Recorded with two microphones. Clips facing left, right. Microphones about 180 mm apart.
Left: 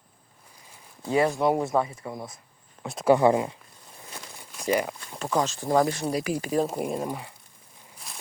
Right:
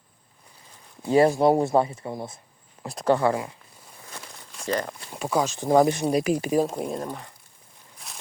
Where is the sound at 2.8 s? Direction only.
Centre (ahead or behind).